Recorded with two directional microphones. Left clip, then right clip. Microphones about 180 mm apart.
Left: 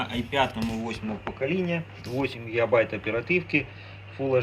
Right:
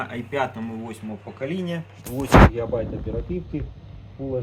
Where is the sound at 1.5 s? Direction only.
45° right (ahead or behind).